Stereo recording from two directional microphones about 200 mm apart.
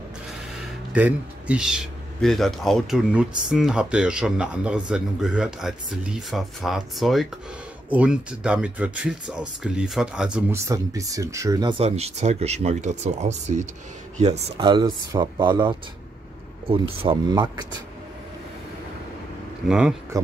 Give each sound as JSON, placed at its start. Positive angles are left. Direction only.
{"t": 0.6, "sound": "speech", "side_deg": -5}
{"t": 10.7, "sound": "speech", "side_deg": -15}
{"t": 11.8, "sound": "speech", "side_deg": -30}
{"t": 14.6, "sound": "a man's voice", "side_deg": -20}
{"t": 19.7, "sound": "speech", "side_deg": 0}